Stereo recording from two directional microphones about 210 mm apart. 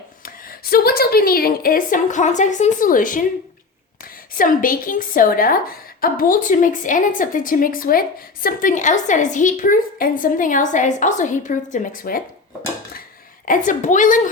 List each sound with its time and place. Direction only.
0.3 s a woman's voice: 45° left (ahead or behind)
4.4 s a woman's voice: 40° left (ahead or behind)
13.4 s a woman's voice: 40° left (ahead or behind)